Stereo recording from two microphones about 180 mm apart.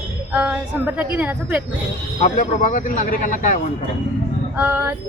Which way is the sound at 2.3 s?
45° left (ahead or behind).